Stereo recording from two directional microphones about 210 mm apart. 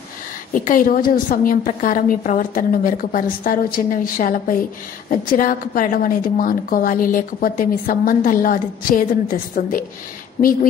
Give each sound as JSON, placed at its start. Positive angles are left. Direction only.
{"t": 0.5, "sound": "a woman's voice", "side_deg": 40}